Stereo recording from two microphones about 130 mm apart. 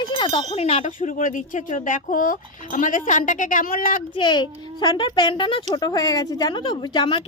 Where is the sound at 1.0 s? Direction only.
75° left (ahead or behind).